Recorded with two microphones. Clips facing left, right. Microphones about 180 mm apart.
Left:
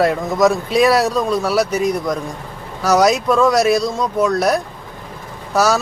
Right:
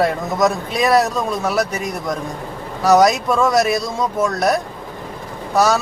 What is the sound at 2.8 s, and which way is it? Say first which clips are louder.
Speech: right 1 dB; centre (ahead or behind).